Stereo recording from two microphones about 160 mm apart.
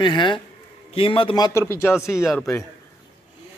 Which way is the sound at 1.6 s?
15° left (ahead or behind).